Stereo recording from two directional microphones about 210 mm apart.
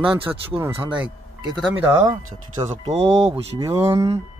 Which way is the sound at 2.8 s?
25° right (ahead or behind).